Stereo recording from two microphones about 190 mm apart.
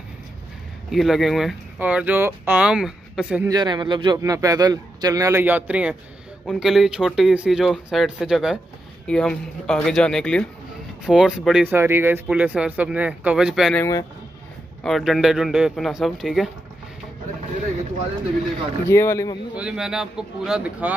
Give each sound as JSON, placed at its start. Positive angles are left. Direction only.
{"t": 0.9, "sound": "speech", "side_deg": 0}
{"t": 3.4, "sound": "a man's voice", "side_deg": -20}
{"t": 11.7, "sound": "a man's voice", "side_deg": -15}
{"t": 13.7, "sound": "speech", "side_deg": 20}
{"t": 14.8, "sound": "speech", "side_deg": 0}
{"t": 18.9, "sound": "speech", "side_deg": 15}
{"t": 19.5, "sound": "speech", "side_deg": -5}